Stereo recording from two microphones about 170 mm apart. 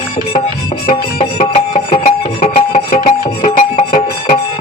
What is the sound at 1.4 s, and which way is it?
Music, 45° left (ahead or behind).